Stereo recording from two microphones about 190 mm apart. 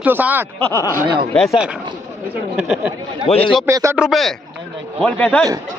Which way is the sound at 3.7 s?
15° right (ahead or behind).